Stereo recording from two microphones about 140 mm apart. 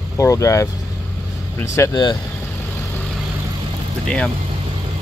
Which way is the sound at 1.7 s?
25° left (ahead or behind).